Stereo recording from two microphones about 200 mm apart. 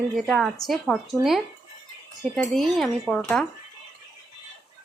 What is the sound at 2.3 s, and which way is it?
Speech, centre (ahead or behind).